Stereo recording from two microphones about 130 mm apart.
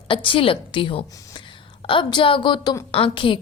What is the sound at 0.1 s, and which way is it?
A woman's voice, 40° left (ahead or behind).